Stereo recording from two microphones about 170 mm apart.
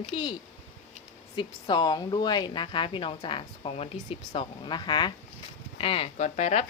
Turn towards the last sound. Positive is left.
turn(degrees=40)  # may be behind; listen again after turning